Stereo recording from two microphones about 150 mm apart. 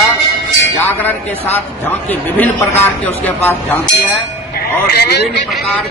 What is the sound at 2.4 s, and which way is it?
Music, 15° left (ahead or behind).